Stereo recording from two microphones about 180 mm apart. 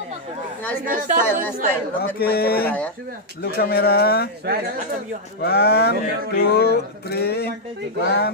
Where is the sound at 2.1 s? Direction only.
60° left (ahead or behind).